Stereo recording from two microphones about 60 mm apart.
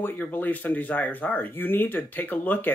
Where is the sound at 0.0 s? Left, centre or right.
Left.